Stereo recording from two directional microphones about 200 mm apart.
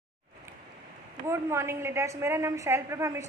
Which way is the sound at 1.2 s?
15° right (ahead or behind).